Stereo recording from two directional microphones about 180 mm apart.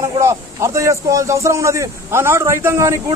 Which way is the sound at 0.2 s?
15° right (ahead or behind).